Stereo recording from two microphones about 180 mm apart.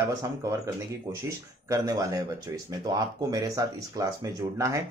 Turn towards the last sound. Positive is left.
turn(degrees=-15)  # may be behind; listen again after turning